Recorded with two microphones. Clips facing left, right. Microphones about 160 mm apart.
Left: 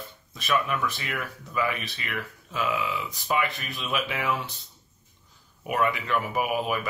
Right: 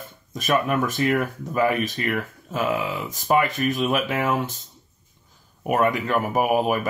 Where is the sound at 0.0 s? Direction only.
45° right (ahead or behind).